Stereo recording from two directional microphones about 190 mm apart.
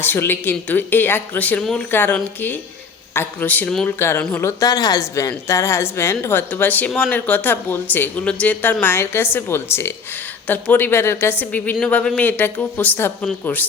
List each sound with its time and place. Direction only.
0.0 s speech: 10° left (ahead or behind)